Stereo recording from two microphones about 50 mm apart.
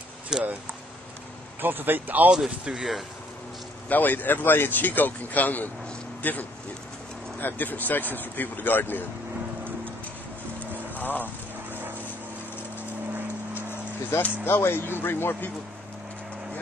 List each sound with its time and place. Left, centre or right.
0.3 s speech: centre
1.6 s speech: right
2.3 s speech: centre
3.9 s speech: left
11.0 s a sound: left
14.1 s speech: left